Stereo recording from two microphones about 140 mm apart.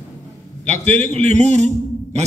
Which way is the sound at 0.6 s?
55° right (ahead or behind).